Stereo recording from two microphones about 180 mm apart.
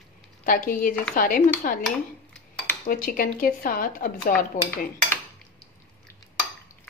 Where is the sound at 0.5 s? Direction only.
50° left (ahead or behind).